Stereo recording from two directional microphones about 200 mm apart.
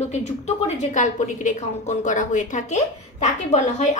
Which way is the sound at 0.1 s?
35° left (ahead or behind).